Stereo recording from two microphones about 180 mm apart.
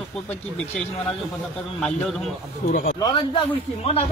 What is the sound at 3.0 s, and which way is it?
A man's voice, 25° left (ahead or behind).